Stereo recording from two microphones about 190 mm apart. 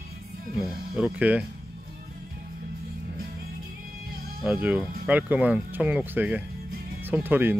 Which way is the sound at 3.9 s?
50° right (ahead or behind).